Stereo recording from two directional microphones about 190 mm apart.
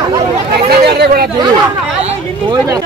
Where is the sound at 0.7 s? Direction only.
55° right (ahead or behind).